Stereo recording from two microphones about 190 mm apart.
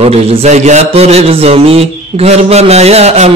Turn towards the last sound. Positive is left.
turn(degrees=-35)  # may be behind; listen again after turning